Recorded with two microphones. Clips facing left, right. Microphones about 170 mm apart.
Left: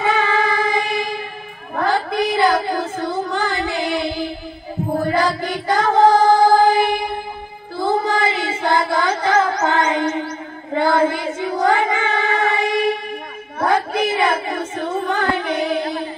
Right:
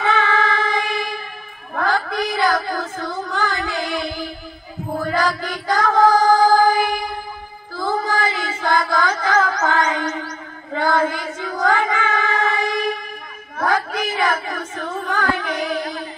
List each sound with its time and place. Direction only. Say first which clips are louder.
0.0 s music: left 1 dB; 15° left (ahead or behind)
1.8 s child singing: left 2 dB; 20° left (ahead or behind)
5.0 s female singing: left 1 dB; 25° left (ahead or behind)
7.7 s music: left 3 dB; 25° left (ahead or behind)
10.7 s child singing: left 3 dB; 20° left (ahead or behind)
12.4 s a sound: left 3 dB; 20° left (ahead or behind)
13.6 s child singing: left 3 dB; 25° left (ahead or behind)